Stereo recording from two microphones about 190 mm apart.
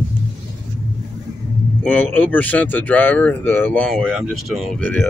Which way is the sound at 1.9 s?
10° left (ahead or behind).